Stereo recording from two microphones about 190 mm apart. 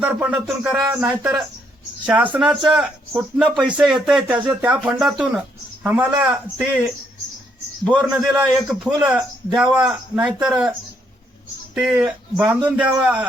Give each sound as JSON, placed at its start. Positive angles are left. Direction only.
{"t": 0.0, "sound": "speech", "side_deg": -5}
{"t": 7.9, "sound": "speech", "side_deg": -5}